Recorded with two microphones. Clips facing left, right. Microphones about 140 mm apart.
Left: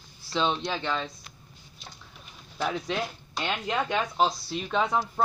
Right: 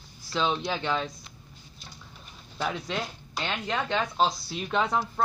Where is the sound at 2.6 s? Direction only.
5° left (ahead or behind).